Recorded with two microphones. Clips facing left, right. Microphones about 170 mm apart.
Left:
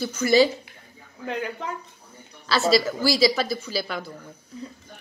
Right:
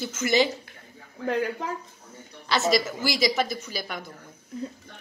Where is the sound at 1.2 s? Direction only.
40° right (ahead or behind).